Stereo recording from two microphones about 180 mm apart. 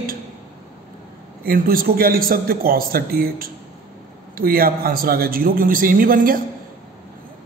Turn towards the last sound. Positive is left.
turn(degrees=-50)  # may be behind; listen again after turning